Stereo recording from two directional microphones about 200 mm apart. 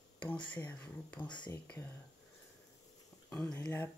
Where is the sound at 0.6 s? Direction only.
10° left (ahead or behind).